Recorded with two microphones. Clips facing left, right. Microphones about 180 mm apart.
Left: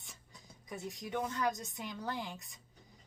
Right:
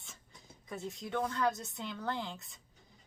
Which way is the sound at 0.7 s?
15° left (ahead or behind).